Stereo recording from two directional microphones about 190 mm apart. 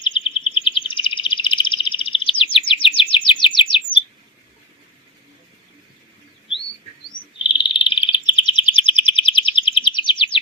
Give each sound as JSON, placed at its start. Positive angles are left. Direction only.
{"t": 0.0, "sound": "bird vocalization", "side_deg": 25}
{"t": 2.4, "sound": "chirp", "side_deg": 30}
{"t": 7.4, "sound": "bird", "side_deg": 25}